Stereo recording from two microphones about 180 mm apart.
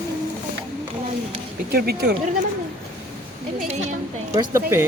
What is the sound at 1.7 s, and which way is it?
Speech, 60° right (ahead or behind).